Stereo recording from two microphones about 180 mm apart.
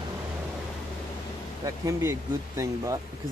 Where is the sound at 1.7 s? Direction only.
15° right (ahead or behind).